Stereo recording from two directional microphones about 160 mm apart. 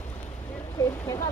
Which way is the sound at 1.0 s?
20° left (ahead or behind).